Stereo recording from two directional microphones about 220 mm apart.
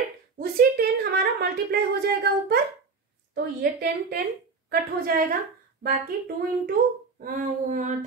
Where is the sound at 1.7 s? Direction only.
45° right (ahead or behind).